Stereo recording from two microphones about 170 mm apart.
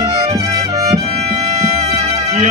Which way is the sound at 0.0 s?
25° right (ahead or behind).